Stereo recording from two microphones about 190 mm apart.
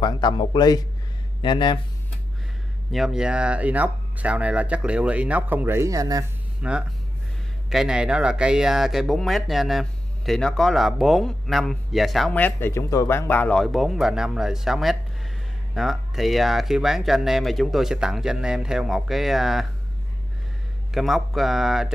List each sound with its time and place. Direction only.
0.0 s a man's voice: 25° left (ahead or behind)
2.9 s speech: centre (ahead or behind); by 6.2 s 20° right (ahead or behind)
6.6 s speech: 5° right (ahead or behind)
20.9 s speech: centre (ahead or behind)